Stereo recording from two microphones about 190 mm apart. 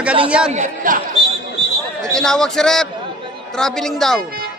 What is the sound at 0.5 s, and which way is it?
Speech, 45° right (ahead or behind).